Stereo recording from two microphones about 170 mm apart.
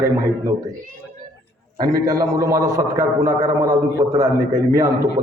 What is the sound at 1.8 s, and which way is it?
A man's voice, 20° right (ahead or behind).